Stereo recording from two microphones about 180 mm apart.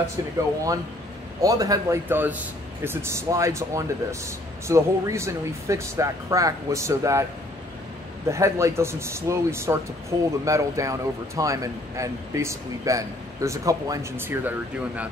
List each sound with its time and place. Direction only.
1.4 s a man's voice: 20° right (ahead or behind)
8.3 s a man's voice: 15° right (ahead or behind)